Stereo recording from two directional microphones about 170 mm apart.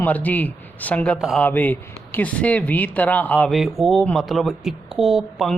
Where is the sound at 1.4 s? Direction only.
10° left (ahead or behind).